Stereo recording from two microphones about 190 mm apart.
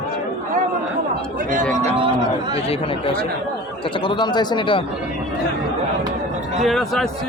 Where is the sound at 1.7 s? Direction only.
35° right (ahead or behind).